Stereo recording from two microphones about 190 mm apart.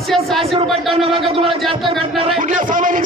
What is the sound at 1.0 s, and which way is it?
Speech, 30° right (ahead or behind).